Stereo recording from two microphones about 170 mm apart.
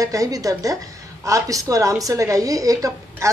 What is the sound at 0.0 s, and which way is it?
Speech, 20° right (ahead or behind).